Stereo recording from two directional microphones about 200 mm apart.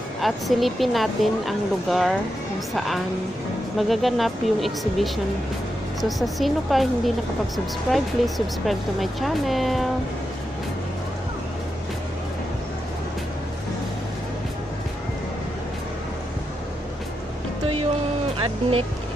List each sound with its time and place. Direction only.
0.2 s speech: centre (ahead or behind)
18.4 s music: 30° right (ahead or behind)